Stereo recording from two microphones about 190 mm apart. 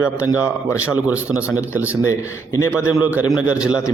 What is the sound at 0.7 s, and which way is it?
A man's voice, 5° right (ahead or behind).